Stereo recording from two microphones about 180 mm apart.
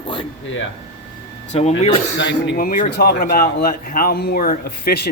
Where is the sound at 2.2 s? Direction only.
75° left (ahead or behind).